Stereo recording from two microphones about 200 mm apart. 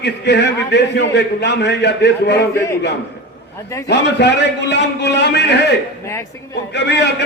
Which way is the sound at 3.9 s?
60° left (ahead or behind).